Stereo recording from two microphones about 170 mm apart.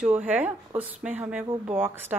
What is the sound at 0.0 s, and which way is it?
Speech, 10° right (ahead or behind).